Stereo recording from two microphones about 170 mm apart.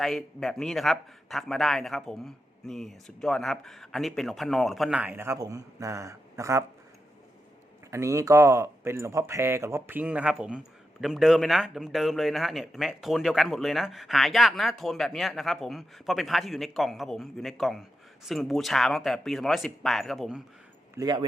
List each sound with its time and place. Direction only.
0.0 s speech: centre (ahead or behind); by 6.7 s 15° right (ahead or behind)
7.9 s speech: 15° right (ahead or behind)
20.9 s speech: 20° right (ahead or behind)